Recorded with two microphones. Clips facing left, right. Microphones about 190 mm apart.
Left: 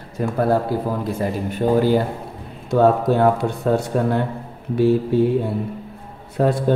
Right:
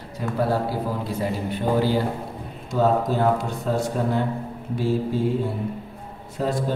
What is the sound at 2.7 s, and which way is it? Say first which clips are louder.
Speech: left 5 dB; 60° left (ahead or behind).